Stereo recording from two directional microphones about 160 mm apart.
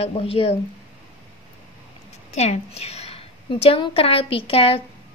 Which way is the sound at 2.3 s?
40° left (ahead or behind).